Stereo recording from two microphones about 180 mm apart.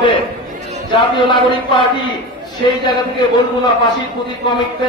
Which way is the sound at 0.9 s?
25° left (ahead or behind).